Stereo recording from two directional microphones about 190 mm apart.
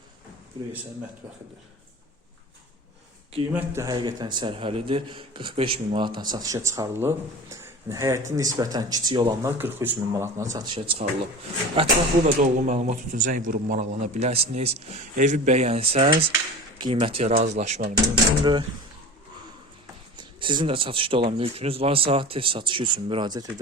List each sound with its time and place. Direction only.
3.5 s a man's voice: 15° right (ahead or behind)
10.8 s speech: 30° right (ahead or behind)
12.4 s speech: 40° right (ahead or behind)
17.8 s a man's voice: 25° right (ahead or behind)
20.1 s a man's voice: 25° right (ahead or behind)